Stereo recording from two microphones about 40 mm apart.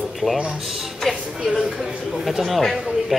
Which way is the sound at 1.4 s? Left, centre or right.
Centre.